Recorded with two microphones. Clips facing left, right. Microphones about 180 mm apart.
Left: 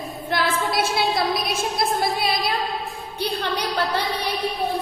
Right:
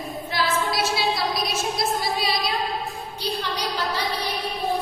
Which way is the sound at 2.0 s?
55° left (ahead or behind).